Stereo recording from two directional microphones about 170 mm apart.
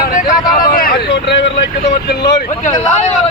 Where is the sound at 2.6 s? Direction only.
40° left (ahead or behind).